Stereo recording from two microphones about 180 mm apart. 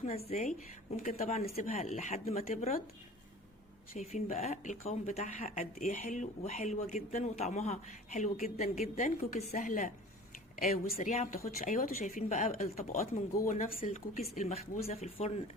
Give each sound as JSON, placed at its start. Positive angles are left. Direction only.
{"t": 0.3, "sound": "speech", "side_deg": 35}
{"t": 3.9, "sound": "speech", "side_deg": 40}